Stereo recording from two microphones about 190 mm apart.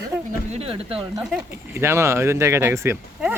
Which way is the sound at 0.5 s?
30° right (ahead or behind).